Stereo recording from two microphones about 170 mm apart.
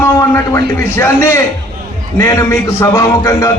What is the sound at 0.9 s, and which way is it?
A man's voice, 15° left (ahead or behind).